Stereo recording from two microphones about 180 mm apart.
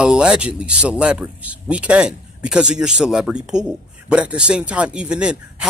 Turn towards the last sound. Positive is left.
turn(degrees=-5)  # may be behind; listen again after turning